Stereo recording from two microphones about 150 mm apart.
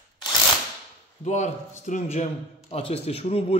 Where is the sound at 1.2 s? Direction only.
50° left (ahead or behind).